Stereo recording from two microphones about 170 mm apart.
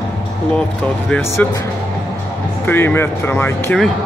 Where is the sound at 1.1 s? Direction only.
10° left (ahead or behind).